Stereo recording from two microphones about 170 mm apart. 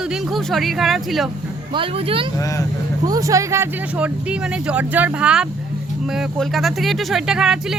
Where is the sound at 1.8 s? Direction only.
35° right (ahead or behind).